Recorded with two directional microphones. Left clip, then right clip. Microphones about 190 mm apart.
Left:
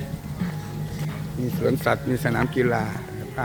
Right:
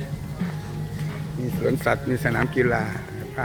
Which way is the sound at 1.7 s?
10° left (ahead or behind).